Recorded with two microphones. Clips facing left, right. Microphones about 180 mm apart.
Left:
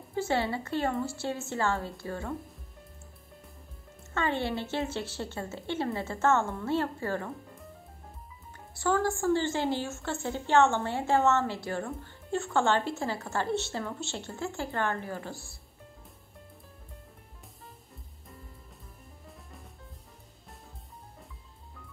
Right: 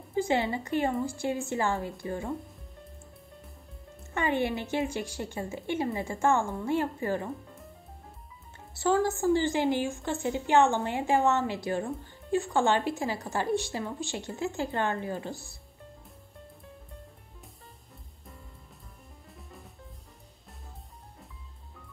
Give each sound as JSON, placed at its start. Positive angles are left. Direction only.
{"t": 0.1, "sound": "a woman's voice", "side_deg": -15}
{"t": 4.1, "sound": "a woman's voice", "side_deg": -15}
{"t": 8.7, "sound": "a woman's voice", "side_deg": -20}
{"t": 19.3, "sound": "drum", "side_deg": 0}